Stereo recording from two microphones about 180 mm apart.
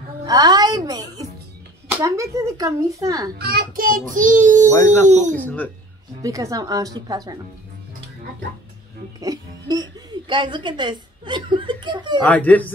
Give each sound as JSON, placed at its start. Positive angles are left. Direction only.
{"t": 0.3, "sound": "a child's voice", "side_deg": -20}
{"t": 3.3, "sound": "a child's voice", "side_deg": -60}
{"t": 5.3, "sound": "speech", "side_deg": 10}
{"t": 6.2, "sound": "a child's voice", "side_deg": -20}
{"t": 9.2, "sound": "speech", "side_deg": -20}
{"t": 12.2, "sound": "speech", "side_deg": 10}